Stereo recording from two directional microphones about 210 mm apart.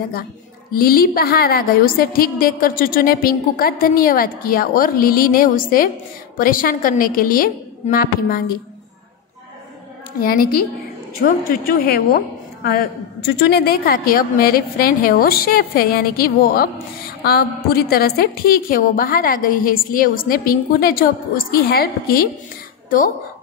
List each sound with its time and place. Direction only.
0.7 s a woman's voice: 45° left (ahead or behind)
10.2 s a woman's voice: 45° left (ahead or behind)
11.8 s a woman's voice: 45° left (ahead or behind)